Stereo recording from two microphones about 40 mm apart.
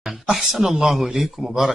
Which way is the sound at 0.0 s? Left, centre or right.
Centre.